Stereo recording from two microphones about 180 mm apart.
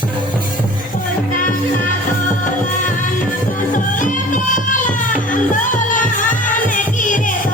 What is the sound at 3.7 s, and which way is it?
Music, 45° left (ahead or behind).